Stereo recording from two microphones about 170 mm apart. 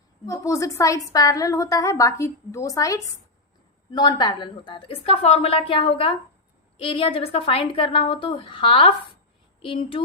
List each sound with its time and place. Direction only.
0.3 s a woman's voice: 20° left (ahead or behind)